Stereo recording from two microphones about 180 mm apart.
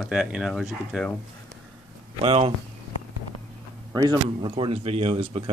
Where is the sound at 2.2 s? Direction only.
35° right (ahead or behind).